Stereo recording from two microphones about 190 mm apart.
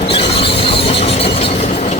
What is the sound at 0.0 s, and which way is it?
Train, 30° left (ahead or behind).